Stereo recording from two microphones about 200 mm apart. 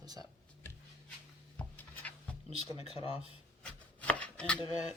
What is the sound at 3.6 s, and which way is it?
Chopping, 5° left (ahead or behind).